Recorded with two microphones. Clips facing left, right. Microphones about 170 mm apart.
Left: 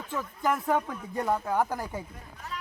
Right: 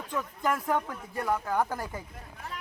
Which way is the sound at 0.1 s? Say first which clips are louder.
Left 1 dB; 5° left (ahead or behind).